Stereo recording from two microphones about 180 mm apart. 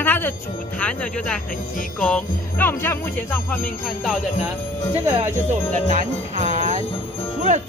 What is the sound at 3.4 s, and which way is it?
Speech, 5° left (ahead or behind).